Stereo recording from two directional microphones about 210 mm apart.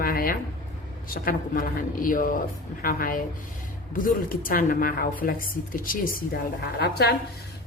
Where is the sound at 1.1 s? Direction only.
40° left (ahead or behind).